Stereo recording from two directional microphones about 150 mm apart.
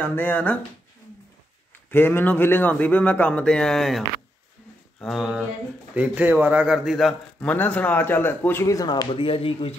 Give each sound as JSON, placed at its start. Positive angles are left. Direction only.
{"t": 0.0, "sound": "speech", "side_deg": 10}
{"t": 1.9, "sound": "a man's voice", "side_deg": 15}
{"t": 7.3, "sound": "speech", "side_deg": 10}